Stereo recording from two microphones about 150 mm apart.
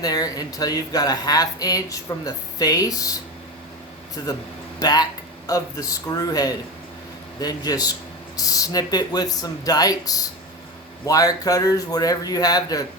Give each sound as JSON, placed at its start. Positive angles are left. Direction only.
{"t": 0.0, "sound": "speech", "side_deg": 25}
{"t": 4.2, "sound": "speech", "side_deg": 25}